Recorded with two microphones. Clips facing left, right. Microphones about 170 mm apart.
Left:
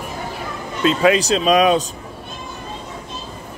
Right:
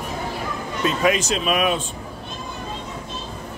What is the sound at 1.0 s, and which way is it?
Speech, 35° left (ahead or behind).